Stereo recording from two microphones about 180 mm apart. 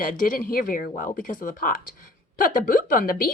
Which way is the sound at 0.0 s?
50° left (ahead or behind).